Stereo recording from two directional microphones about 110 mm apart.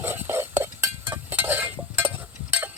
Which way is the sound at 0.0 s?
20° right (ahead or behind).